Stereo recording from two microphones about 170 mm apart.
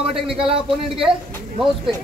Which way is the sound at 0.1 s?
5° right (ahead or behind).